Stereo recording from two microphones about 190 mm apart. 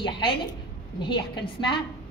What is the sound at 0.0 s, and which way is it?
A woman's voice, 25° left (ahead or behind).